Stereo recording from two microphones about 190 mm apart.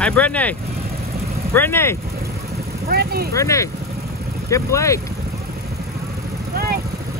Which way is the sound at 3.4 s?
15° left (ahead or behind).